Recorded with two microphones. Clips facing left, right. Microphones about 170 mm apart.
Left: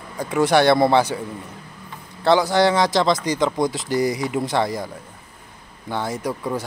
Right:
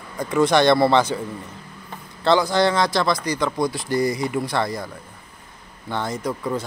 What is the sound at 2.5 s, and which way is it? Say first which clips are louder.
Speech: left 2 dB; 15° left (ahead or behind).